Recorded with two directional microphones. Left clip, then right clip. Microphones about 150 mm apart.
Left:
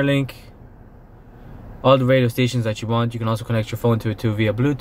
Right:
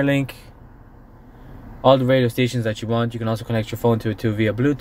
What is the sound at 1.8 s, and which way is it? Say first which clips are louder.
Speech: even; centre (ahead or behind).